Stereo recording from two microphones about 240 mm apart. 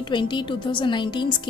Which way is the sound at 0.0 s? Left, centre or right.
Centre.